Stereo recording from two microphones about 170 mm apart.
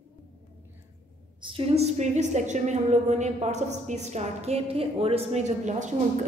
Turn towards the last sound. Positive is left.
turn(degrees=-45)  # may be behind; listen again after turning